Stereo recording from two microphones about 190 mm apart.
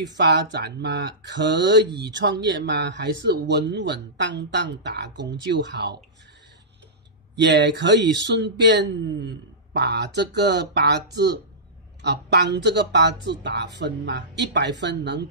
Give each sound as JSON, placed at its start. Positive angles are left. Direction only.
{"t": 0.2, "sound": "speech", "side_deg": -65}
{"t": 1.9, "sound": "speech", "side_deg": -25}
{"t": 2.5, "sound": "speech", "side_deg": -70}
{"t": 7.3, "sound": "speech", "side_deg": -65}